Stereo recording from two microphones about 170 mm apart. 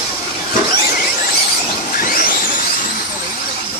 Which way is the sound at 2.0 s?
55° left (ahead or behind).